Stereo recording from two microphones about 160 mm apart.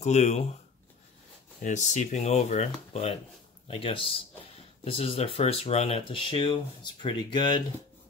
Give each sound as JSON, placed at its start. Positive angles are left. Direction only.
{"t": 0.0, "sound": "speech", "side_deg": 45}
{"t": 1.6, "sound": "speech", "side_deg": 50}